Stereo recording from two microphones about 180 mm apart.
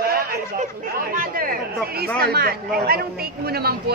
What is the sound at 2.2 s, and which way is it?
Speech, 60° right (ahead or behind).